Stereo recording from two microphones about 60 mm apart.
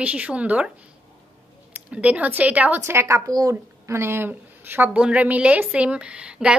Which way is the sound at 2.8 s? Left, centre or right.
Right.